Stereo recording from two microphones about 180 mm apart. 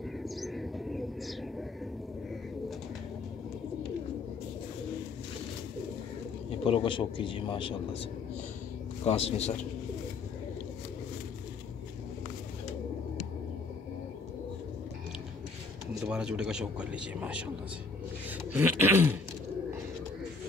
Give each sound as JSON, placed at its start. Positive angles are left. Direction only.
{"t": 0.2, "sound": "bird", "side_deg": 0}
{"t": 6.6, "sound": "a man's voice", "side_deg": 30}
{"t": 15.9, "sound": "speech", "side_deg": -5}
{"t": 18.5, "sound": "a sound", "side_deg": -10}